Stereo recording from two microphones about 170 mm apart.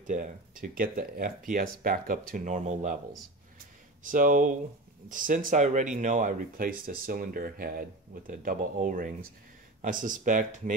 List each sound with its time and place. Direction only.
0.0 s speech: 55° right (ahead or behind)